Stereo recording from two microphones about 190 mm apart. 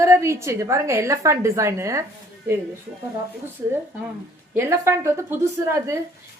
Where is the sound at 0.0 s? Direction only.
15° right (ahead or behind).